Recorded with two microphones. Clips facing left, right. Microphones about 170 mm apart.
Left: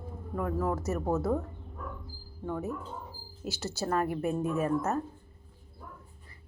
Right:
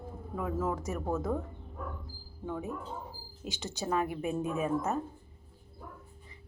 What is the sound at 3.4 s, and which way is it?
A woman's voice, 15° right (ahead or behind).